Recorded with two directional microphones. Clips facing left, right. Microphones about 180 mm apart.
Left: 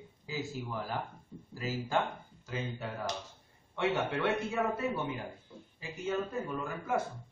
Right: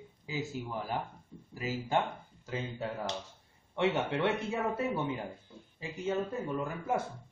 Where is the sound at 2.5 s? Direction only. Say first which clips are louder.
Right 2 dB; 25° right (ahead or behind).